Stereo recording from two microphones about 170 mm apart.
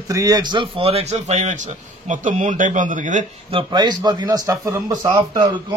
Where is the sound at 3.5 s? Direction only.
25° right (ahead or behind).